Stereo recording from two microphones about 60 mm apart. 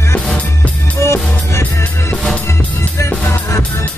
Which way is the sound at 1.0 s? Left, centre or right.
Left.